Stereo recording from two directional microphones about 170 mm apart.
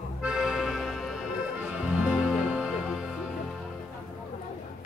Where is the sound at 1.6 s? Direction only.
5° right (ahead or behind).